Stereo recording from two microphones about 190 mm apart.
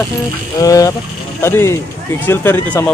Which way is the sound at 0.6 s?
20° left (ahead or behind).